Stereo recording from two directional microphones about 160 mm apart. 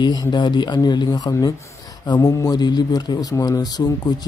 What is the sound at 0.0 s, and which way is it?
Speech, 25° left (ahead or behind).